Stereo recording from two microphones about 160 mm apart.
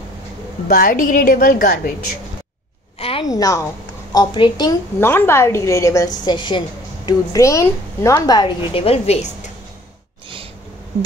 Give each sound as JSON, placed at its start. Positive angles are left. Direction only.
{"t": 0.7, "sound": "a woman's voice", "side_deg": 65}
{"t": 3.0, "sound": "a sound", "side_deg": 35}
{"t": 3.3, "sound": "a woman's voice", "side_deg": 25}
{"t": 5.0, "sound": "a woman's voice", "side_deg": 15}
{"t": 6.2, "sound": "a woman's voice", "side_deg": 30}